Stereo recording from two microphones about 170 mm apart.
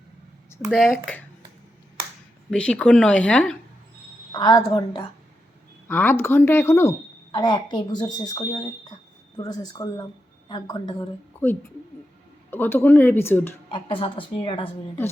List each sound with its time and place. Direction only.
0.7 s speech: centre (ahead or behind)
2.5 s speech: 5° left (ahead or behind)
4.3 s a woman's voice: 25° left (ahead or behind)
5.9 s speech: 10° left (ahead or behind)
7.3 s a woman's voice: 25° left (ahead or behind)
11.3 s speech: 15° left (ahead or behind)
13.7 s a woman's voice: 30° left (ahead or behind)